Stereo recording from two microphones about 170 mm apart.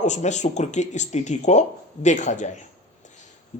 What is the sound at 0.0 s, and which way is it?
A woman's voice, 45° left (ahead or behind).